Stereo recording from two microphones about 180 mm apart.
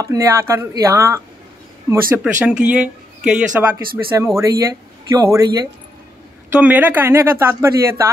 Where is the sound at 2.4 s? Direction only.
5° right (ahead or behind).